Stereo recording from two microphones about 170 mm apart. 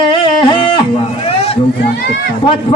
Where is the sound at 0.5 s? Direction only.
30° left (ahead or behind).